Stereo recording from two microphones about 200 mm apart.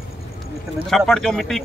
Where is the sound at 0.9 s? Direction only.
Centre (ahead or behind).